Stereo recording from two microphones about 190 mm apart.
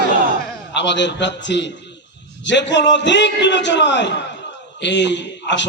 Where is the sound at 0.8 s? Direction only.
70° left (ahead or behind).